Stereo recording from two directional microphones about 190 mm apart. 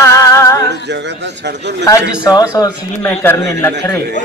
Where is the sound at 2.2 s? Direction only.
20° left (ahead or behind).